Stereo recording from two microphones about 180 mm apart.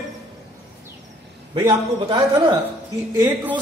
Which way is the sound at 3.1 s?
10° right (ahead or behind).